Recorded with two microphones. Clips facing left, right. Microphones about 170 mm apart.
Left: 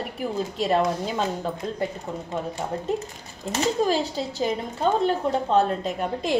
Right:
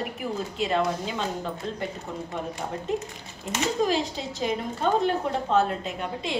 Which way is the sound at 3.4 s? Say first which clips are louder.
Left 2 dB; 35° left (ahead or behind).